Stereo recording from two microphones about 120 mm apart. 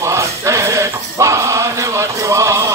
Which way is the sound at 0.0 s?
25° right (ahead or behind).